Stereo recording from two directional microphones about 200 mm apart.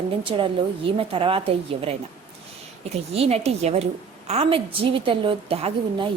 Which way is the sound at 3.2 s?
30° right (ahead or behind).